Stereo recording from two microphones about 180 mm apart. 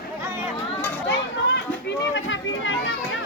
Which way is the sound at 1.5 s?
85° left.